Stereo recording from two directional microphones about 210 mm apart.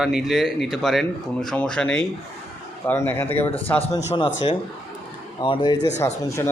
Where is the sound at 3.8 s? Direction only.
30° left (ahead or behind); by 6.5 s 15° left (ahead or behind).